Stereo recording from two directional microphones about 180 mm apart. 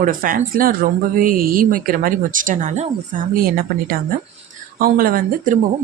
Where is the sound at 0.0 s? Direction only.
50° right (ahead or behind).